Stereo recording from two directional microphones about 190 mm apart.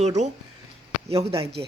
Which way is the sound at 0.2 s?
40° right (ahead or behind).